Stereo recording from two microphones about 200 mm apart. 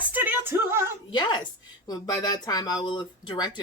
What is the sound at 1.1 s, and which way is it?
Speech, 20° left (ahead or behind).